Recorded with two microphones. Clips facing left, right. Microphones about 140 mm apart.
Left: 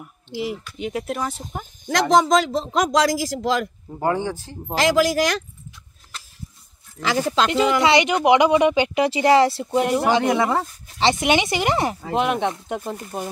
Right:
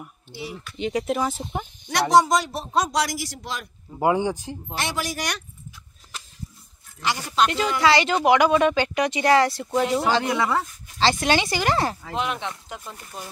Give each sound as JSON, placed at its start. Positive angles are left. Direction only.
{"t": 0.3, "sound": "a man's voice", "side_deg": 90}
{"t": 0.7, "sound": "speech", "side_deg": 5}
{"t": 1.9, "sound": "a man's voice", "side_deg": 90}
{"t": 4.0, "sound": "speech", "side_deg": -15}
{"t": 4.7, "sound": "a man's voice", "side_deg": 90}
{"t": 7.0, "sound": "speech", "side_deg": 50}
{"t": 7.4, "sound": "a man's voice", "side_deg": 90}
{"t": 7.8, "sound": "speech", "side_deg": 20}
{"t": 12.1, "sound": "speech", "side_deg": 55}